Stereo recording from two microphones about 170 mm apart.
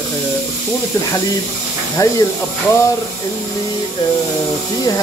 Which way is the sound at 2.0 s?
20° left (ahead or behind).